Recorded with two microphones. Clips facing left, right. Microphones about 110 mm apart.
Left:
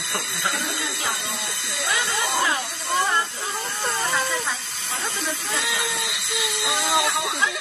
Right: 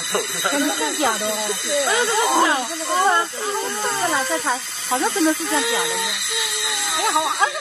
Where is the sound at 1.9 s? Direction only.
25° right (ahead or behind).